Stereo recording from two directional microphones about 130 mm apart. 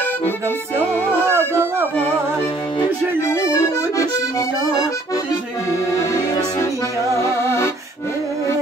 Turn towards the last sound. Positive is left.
turn(degrees=20)  # may be behind; listen again after turning